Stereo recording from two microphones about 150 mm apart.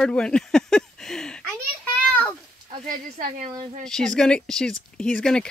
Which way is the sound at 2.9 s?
55° right (ahead or behind).